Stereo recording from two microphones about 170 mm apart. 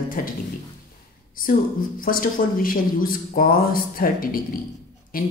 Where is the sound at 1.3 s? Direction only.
55° left (ahead or behind).